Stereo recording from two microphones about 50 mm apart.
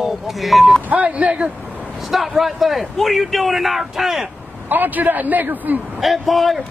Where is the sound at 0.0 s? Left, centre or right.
Centre.